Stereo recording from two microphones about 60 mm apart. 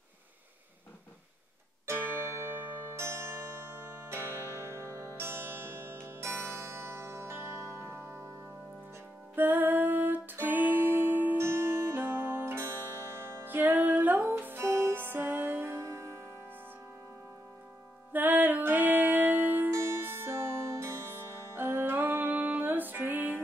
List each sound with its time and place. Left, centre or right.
1.9 s music: right
9.3 s music: right
15.8 s music: right
18.1 s music: right
19.7 s music: right